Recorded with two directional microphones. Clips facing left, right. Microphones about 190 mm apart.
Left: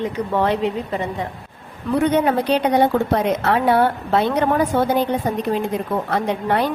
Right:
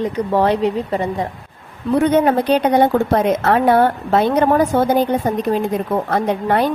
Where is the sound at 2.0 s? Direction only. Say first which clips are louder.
Right 3 dB; 45° right (ahead or behind).